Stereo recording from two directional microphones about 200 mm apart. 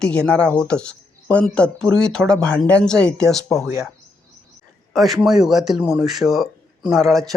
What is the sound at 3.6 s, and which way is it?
Speech, 15° right (ahead or behind).